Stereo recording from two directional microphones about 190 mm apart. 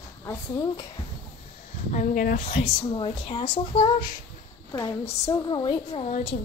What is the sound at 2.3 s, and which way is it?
A woman's voice, 30° left (ahead or behind).